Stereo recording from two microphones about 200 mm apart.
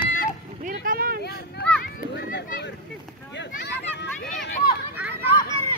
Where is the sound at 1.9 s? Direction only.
60° left (ahead or behind).